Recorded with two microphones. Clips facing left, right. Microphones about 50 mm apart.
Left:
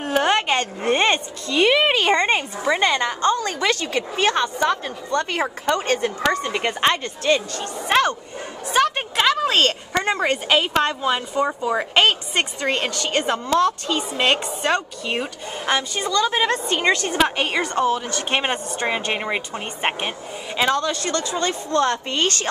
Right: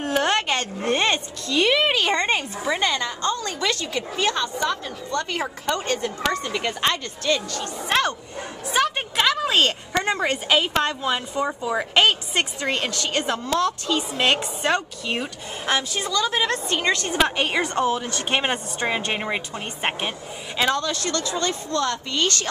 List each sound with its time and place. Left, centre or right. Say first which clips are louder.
0.0 s a woman's voice: left 2 dB; centre
2.8 s a woman's voice: left 4 dB; left
7.9 s a woman's voice: left 4 dB; centre
8.6 s a sound: left 3 dB; centre
10.2 s a woman's voice: left 2 dB; centre; by 22.5 s left